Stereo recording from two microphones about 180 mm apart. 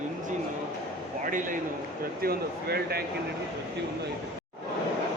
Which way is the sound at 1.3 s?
45° right (ahead or behind).